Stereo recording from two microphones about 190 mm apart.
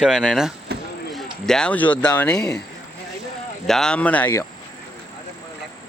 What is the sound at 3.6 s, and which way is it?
Speech, centre (ahead or behind).